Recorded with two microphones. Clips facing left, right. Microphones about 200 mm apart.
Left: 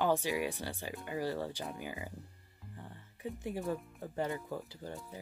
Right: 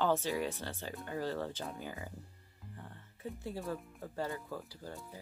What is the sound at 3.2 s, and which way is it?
Speech, 15° left (ahead or behind).